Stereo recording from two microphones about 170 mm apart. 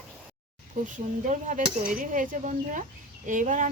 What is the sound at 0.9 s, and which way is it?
Speech, 50° right (ahead or behind).